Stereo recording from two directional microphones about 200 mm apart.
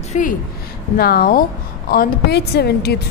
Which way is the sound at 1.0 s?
50° left (ahead or behind).